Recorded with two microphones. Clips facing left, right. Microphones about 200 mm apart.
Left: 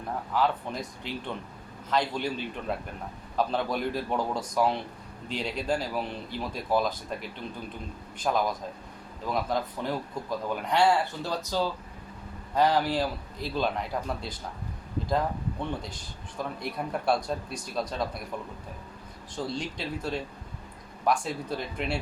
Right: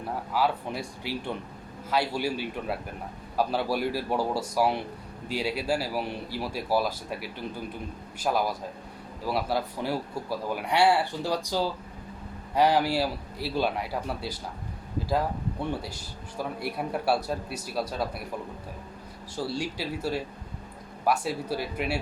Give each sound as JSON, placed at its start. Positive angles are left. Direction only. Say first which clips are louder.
{"t": 0.3, "sound": "speech", "louder": "even", "side_deg": -10}
{"t": 15.8, "sound": "speech", "louder": "right 2 dB", "side_deg": -5}
{"t": 19.5, "sound": "speech", "louder": "right 2 dB", "side_deg": -5}